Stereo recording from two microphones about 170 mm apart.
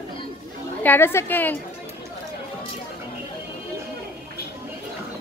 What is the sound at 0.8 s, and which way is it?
Speech, 15° left (ahead or behind).